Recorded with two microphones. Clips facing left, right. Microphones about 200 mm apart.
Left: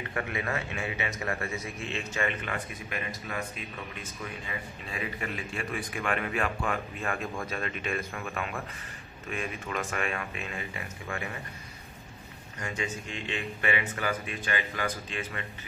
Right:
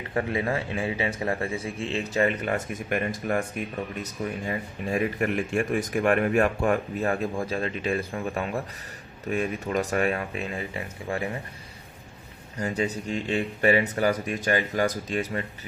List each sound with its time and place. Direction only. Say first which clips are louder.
0.1 s a man's voice: right 8 dB; 30° right (ahead or behind)
12.5 s a man's voice: right 8 dB; 35° right (ahead or behind)